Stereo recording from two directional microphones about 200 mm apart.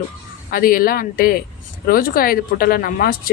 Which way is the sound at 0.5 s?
45° left (ahead or behind).